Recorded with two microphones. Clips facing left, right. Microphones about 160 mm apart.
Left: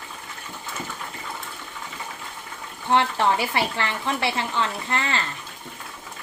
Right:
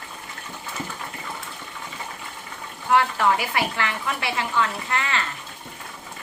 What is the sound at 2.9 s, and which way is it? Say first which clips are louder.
Speech: even; 30° left (ahead or behind).